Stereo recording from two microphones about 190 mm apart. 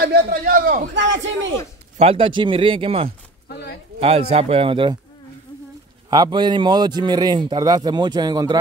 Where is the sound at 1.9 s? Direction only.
30° right (ahead or behind).